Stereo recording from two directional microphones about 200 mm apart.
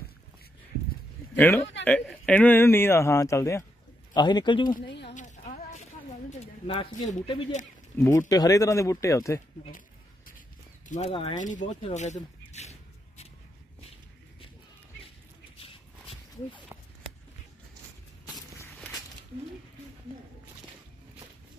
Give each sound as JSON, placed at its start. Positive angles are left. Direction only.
{"t": 1.3, "sound": "a man's voice", "side_deg": 10}
{"t": 4.8, "sound": "speech", "side_deg": 60}
{"t": 5.1, "sound": "a sound", "side_deg": 40}
{"t": 6.4, "sound": "speech", "side_deg": 30}
{"t": 8.2, "sound": "speech", "side_deg": 15}
{"t": 10.9, "sound": "speech", "side_deg": 30}
{"t": 15.6, "sound": "a sound", "side_deg": 25}
{"t": 18.2, "sound": "walk", "side_deg": 15}